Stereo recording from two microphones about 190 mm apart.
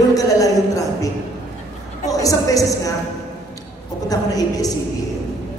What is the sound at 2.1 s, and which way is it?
Speech, 15° left (ahead or behind).